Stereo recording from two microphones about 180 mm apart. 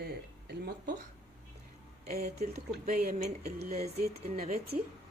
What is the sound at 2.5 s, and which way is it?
Speech, 60° right (ahead or behind).